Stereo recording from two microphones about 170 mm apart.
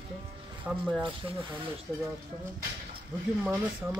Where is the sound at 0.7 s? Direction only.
5° right (ahead or behind).